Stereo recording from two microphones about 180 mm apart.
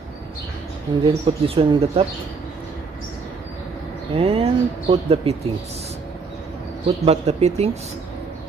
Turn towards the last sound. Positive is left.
turn(degrees=-35)  # may be behind; listen again after turning